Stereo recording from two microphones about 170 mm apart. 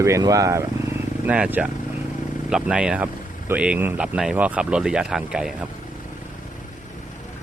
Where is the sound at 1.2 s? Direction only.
5° right (ahead or behind).